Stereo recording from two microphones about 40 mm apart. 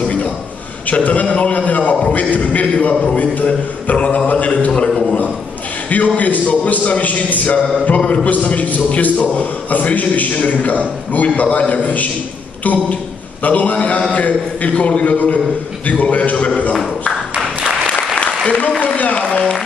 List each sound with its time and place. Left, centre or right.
0.8 s a man's voice: left
5.9 s a man's voice: left
13.4 s a man's voice: left
18.8 s a sound: left